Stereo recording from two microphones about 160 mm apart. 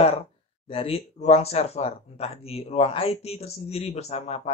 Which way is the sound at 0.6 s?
35° left (ahead or behind).